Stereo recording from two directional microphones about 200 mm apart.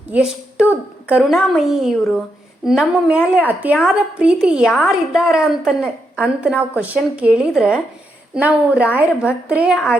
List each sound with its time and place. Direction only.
0.1 s a woman's voice: 5° right (ahead or behind)